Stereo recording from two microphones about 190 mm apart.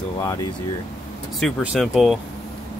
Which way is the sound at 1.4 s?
Centre (ahead or behind).